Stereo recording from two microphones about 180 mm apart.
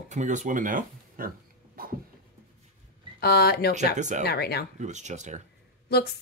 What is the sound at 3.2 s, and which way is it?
Speech, 60° left (ahead or behind).